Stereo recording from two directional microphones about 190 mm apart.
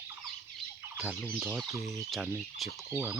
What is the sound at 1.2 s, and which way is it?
Fowl, 5° left (ahead or behind).